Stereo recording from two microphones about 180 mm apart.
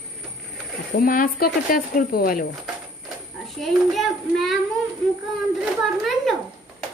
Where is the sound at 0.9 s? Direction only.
50° left (ahead or behind).